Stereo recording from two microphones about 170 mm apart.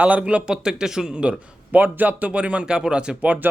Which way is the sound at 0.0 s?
10° right (ahead or behind).